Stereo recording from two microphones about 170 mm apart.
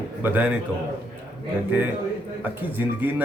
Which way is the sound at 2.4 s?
10° right (ahead or behind).